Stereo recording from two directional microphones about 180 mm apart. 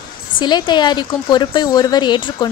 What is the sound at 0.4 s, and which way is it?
Speech, 25° left (ahead or behind).